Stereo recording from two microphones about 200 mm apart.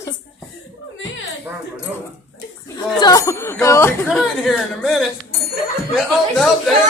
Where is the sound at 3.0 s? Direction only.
15° left (ahead or behind).